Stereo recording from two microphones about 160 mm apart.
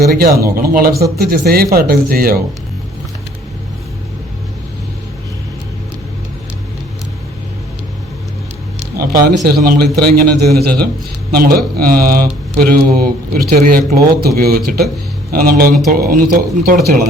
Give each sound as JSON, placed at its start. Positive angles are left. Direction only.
{"t": 0.0, "sound": "speech", "side_deg": -70}
{"t": 9.0, "sound": "speech", "side_deg": -70}
{"t": 11.3, "sound": "speech", "side_deg": -70}